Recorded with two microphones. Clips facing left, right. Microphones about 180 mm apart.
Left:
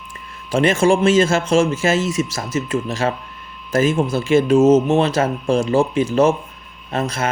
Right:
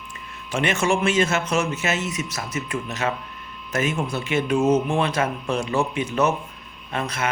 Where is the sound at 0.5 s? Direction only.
30° left (ahead or behind).